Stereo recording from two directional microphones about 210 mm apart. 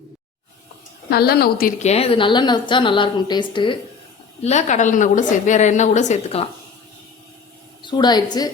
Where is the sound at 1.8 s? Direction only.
30° left (ahead or behind).